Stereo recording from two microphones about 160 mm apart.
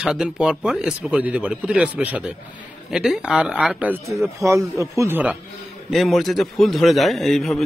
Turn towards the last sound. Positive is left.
turn(degrees=0)  # may be behind; listen again after turning